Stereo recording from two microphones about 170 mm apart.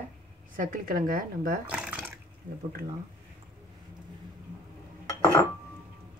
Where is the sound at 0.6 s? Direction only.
55° right (ahead or behind).